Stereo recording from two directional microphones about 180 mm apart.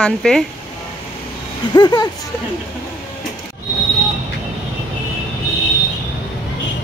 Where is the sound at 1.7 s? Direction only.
25° left (ahead or behind).